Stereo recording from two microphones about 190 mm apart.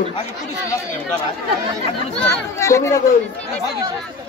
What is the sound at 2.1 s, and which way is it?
Speech, 5° left (ahead or behind).